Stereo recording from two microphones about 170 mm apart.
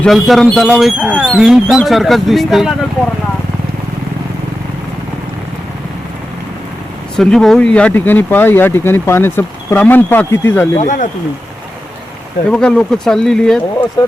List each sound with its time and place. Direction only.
0.0 s speech: centre (ahead or behind)
7.2 s speech: centre (ahead or behind)
10.8 s speech: 45° left (ahead or behind)
12.5 s speech: 5° left (ahead or behind)